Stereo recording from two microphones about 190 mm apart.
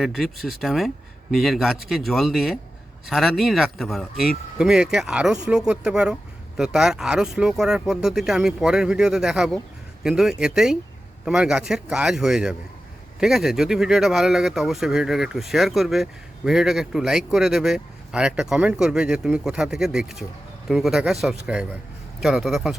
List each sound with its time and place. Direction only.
0.0 s speech: centre (ahead or behind)